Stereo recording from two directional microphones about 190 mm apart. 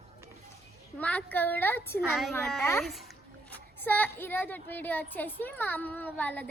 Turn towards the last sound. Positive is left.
turn(degrees=10)  # may be behind; listen again after turning